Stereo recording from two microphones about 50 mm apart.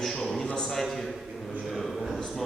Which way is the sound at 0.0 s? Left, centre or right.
Centre.